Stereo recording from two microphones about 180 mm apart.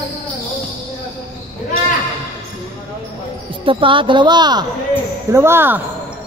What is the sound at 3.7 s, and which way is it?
A woman's voice, 30° right (ahead or behind).